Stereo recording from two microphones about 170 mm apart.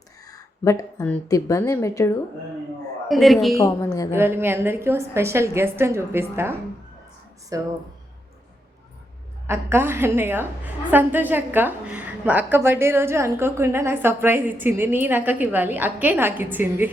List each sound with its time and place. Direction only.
0.3 s a woman's voice: 20° left (ahead or behind)
3.1 s speech: centre (ahead or behind)
4.1 s a woman's voice: 15° right (ahead or behind)
9.5 s a woman's voice: 15° right (ahead or behind)